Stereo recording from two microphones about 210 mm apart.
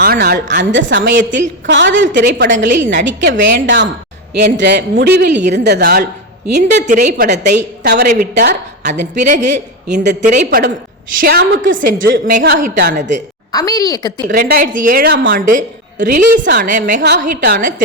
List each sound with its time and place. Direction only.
0.0 s a woman's voice: 50° right (ahead or behind)
0.5 s a woman's voice: 60° right (ahead or behind)
6.8 s a woman's voice: 35° right (ahead or behind)
7.5 s a woman's voice: 50° right (ahead or behind)
9.2 s a woman's voice: 35° right (ahead or behind)
9.5 s a woman's voice: 55° right (ahead or behind)
10.2 s a woman's voice: 35° right (ahead or behind)
10.4 s a woman's voice: 55° right (ahead or behind)
11.2 s a woman's voice: 45° right (ahead or behind)
13.5 s a woman's voice: 15° left (ahead or behind)
14.3 s a woman's voice: 45° right (ahead or behind)